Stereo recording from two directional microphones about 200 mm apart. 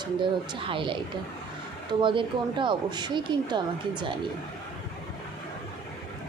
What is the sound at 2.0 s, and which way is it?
Speech, 25° right (ahead or behind).